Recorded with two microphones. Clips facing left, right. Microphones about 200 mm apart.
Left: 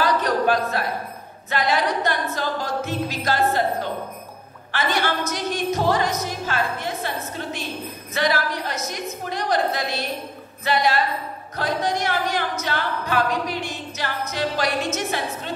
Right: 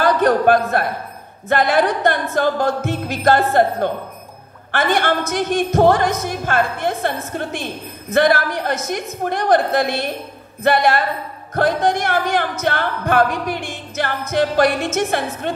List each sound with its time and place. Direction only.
0.0 s a sound: 55° right (ahead or behind)
1.5 s music: 55° right (ahead or behind)
8.1 s a woman's voice: 55° right (ahead or behind)
10.6 s music: 55° right (ahead or behind)